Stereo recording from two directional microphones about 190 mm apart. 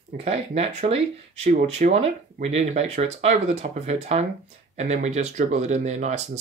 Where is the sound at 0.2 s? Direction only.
35° right (ahead or behind).